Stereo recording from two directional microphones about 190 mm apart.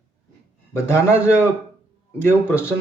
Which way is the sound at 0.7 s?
15° left (ahead or behind).